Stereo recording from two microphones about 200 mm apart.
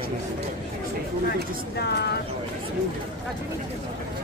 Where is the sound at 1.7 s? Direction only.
55° left (ahead or behind).